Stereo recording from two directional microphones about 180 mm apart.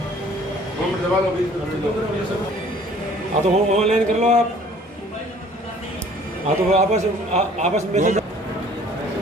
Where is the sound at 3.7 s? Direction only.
40° right (ahead or behind).